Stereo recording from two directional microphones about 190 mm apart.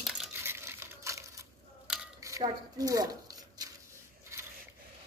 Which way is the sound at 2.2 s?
15° right (ahead or behind).